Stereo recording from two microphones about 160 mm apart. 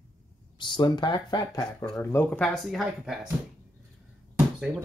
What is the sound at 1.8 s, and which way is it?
Speech, 10° left (ahead or behind).